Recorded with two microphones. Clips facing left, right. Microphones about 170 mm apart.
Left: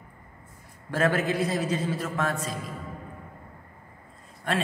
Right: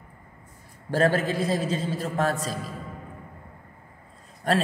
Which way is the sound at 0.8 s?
35° right (ahead or behind).